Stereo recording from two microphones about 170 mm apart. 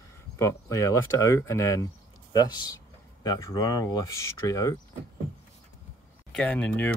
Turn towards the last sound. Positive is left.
turn(degrees=10)  # may be behind; listen again after turning